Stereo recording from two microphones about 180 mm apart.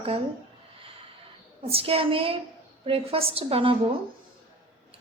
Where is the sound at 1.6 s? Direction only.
30° right (ahead or behind).